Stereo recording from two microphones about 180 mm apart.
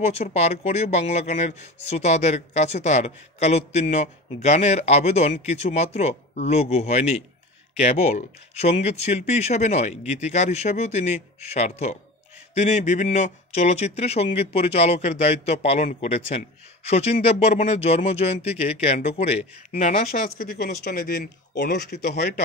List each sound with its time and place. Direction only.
0.0 s speech: 35° left (ahead or behind)
20.1 s speech: 50° left (ahead or behind)